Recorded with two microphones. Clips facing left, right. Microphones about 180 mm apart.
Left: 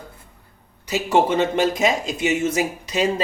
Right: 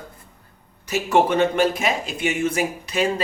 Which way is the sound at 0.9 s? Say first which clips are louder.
Even; 20° left (ahead or behind).